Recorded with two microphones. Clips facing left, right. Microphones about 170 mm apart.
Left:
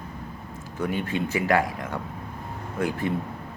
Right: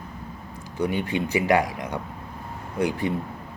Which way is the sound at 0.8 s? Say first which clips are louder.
Right 2 dB; 15° right (ahead or behind).